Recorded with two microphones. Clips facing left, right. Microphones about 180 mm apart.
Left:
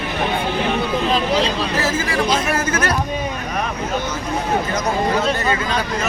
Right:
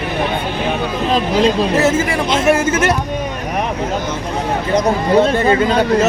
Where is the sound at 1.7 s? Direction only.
25° right (ahead or behind).